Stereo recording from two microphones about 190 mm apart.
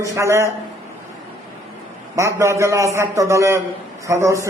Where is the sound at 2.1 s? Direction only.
15° right (ahead or behind).